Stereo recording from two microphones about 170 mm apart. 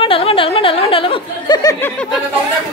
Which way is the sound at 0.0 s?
35° left (ahead or behind).